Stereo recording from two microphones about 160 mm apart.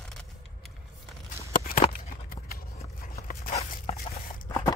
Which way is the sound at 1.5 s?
60° left (ahead or behind).